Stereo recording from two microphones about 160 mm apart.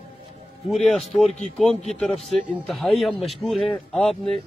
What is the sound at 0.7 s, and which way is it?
Speech, centre (ahead or behind).